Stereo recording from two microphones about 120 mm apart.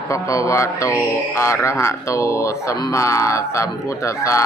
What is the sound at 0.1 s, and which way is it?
Speech, 25° left (ahead or behind).